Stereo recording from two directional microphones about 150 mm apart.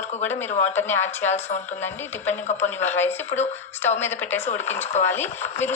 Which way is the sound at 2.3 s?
50° left (ahead or behind).